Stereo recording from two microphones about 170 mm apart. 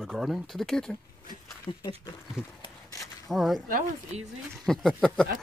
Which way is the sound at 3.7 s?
40° right (ahead or behind).